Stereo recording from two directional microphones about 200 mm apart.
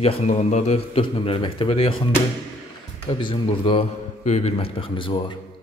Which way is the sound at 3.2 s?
25° left (ahead or behind).